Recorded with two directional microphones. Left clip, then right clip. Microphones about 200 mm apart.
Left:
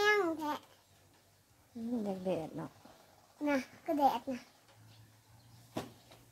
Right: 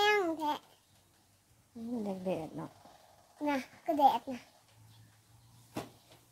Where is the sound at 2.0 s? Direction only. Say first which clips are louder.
Right 1 dB; centre (ahead or behind).